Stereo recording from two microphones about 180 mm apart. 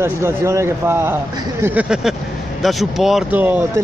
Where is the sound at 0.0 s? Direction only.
15° right (ahead or behind).